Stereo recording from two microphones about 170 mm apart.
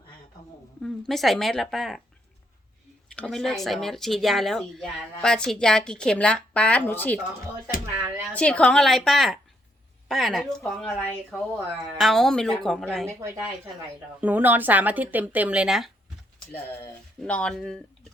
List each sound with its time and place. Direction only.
0.8 s speech: centre (ahead or behind)
3.2 s speech: 5° left (ahead or behind)
8.3 s speech: 5° left (ahead or behind)
13.1 s speech: 15° right (ahead or behind)
17.2 s speech: 5° left (ahead or behind)